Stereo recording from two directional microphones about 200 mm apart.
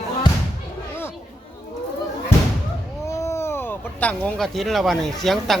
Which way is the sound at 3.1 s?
15° left (ahead or behind).